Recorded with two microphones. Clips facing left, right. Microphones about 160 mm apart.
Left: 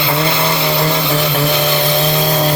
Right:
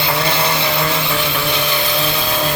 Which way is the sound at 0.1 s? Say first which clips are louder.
Left 3 dB; 25° left (ahead or behind).